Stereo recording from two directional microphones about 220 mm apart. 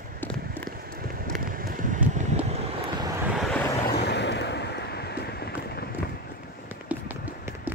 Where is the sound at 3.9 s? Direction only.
50° left (ahead or behind).